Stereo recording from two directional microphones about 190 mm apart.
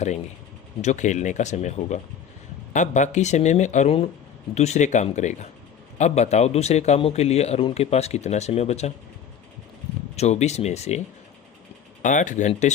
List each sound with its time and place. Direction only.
0.8 s a man's voice: 40° left (ahead or behind)
10.2 s a man's voice: 35° left (ahead or behind)
12.0 s a man's voice: 40° left (ahead or behind)